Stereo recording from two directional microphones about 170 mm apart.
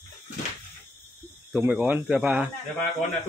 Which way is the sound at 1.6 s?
10° right (ahead or behind).